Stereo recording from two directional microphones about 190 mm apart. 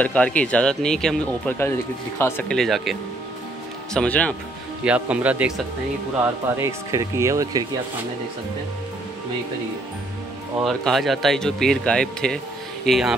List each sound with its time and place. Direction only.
0.0 s speech: 5° left (ahead or behind)
4.8 s speech: 5° right (ahead or behind)
10.6 s speech: centre (ahead or behind)